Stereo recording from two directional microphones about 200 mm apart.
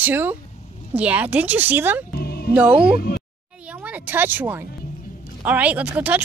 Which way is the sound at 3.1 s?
50° left (ahead or behind).